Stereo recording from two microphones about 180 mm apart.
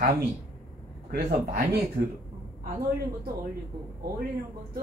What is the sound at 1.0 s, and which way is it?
A man's voice, 55° right (ahead or behind).